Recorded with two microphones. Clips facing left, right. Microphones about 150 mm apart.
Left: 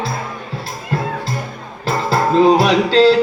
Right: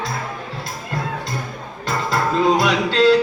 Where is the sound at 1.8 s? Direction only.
30° left (ahead or behind).